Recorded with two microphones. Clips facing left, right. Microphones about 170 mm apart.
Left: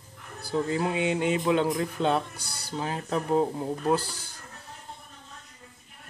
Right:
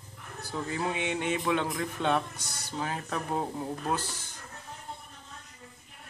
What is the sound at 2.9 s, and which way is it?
Speech, 20° left (ahead or behind).